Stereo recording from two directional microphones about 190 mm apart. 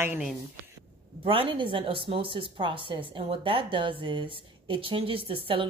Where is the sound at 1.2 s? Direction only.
30° right (ahead or behind).